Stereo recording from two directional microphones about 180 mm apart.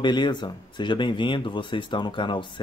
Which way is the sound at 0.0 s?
25° left (ahead or behind).